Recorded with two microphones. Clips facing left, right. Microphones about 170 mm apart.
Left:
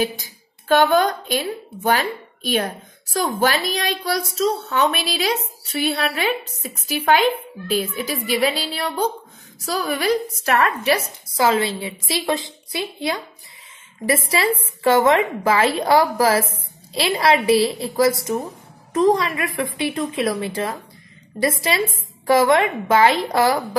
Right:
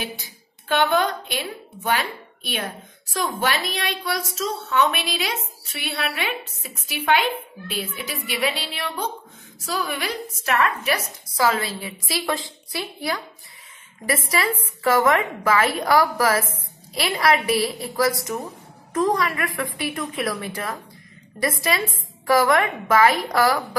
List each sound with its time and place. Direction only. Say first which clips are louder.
0.1 s a woman's voice: left 1 dB; 40° left (ahead or behind); by 13.2 s 20° left (ahead or behind)
14.3 s a woman's voice: left 3 dB; 25° left (ahead or behind)